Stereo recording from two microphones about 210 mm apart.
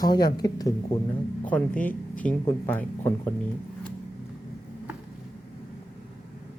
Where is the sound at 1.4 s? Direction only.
5° left (ahead or behind).